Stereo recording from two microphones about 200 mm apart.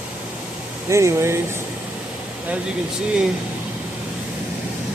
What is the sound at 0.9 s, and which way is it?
Speech, 15° right (ahead or behind).